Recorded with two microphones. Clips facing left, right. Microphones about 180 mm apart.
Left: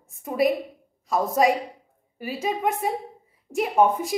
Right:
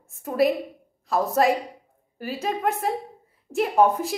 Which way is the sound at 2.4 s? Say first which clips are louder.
Even; centre (ahead or behind).